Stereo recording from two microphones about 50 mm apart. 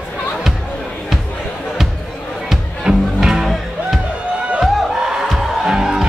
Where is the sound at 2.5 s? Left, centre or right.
Centre.